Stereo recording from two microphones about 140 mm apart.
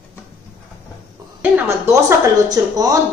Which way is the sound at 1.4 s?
20° right (ahead or behind).